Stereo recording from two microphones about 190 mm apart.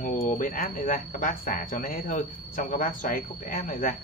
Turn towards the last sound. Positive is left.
turn(degrees=45)  # may be behind; listen again after turning